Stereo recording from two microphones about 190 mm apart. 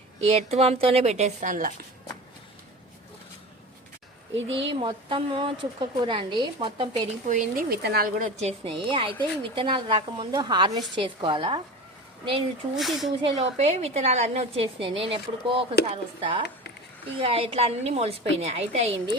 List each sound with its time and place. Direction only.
0.2 s a woman's voice: 35° right (ahead or behind)
4.4 s a woman's voice: 75° right (ahead or behind)
4.7 s a woman's voice: 25° right (ahead or behind)
7.3 s speech: 45° right (ahead or behind)
8.4 s a woman's voice: 30° right (ahead or behind)
12.7 s speech: centre (ahead or behind)
13.2 s a woman's voice: 35° right (ahead or behind)